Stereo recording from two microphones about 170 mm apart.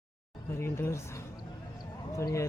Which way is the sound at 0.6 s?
15° left (ahead or behind).